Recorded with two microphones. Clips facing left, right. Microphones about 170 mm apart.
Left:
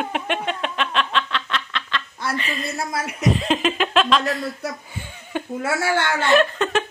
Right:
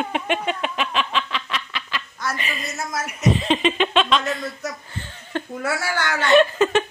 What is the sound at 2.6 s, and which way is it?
Speech, 30° left (ahead or behind).